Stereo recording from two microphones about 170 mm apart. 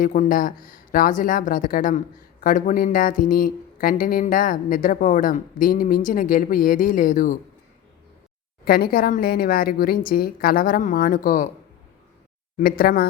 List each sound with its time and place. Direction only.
0.0 s speech: 50° left (ahead or behind)
8.6 s speech: 60° left (ahead or behind)
12.5 s speech: 60° left (ahead or behind)